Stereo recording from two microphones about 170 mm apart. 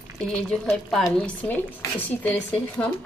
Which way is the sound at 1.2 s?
10° left (ahead or behind).